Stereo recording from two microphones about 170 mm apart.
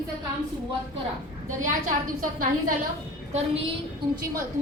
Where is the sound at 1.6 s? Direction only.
50° right (ahead or behind).